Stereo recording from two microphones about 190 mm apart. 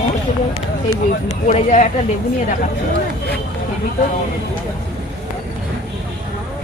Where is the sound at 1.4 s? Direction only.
40° left (ahead or behind).